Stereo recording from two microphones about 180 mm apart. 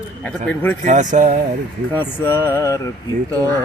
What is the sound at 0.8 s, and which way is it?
Speech, 45° right (ahead or behind).